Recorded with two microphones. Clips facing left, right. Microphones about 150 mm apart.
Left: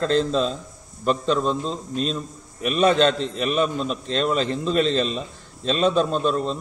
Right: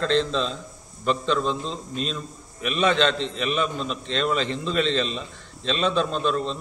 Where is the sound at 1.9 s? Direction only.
40° left (ahead or behind).